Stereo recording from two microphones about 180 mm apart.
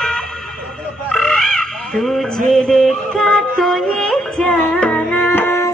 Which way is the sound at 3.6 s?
Centre (ahead or behind).